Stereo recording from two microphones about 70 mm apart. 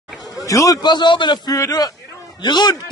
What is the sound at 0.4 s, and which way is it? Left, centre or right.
Speech, left.